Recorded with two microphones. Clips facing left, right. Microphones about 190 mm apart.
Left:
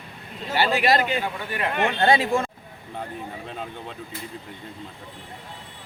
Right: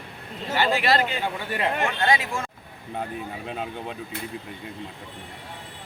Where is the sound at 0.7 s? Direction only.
15° left (ahead or behind).